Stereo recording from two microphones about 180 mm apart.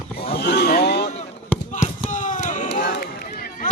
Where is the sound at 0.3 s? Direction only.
65° left (ahead or behind).